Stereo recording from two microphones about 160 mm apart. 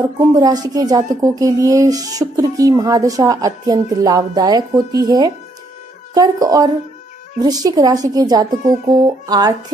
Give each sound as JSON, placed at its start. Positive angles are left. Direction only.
{"t": 0.3, "sound": "speech", "side_deg": -25}